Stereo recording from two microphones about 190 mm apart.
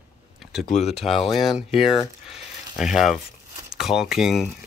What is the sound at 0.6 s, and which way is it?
Speech, 35° left (ahead or behind).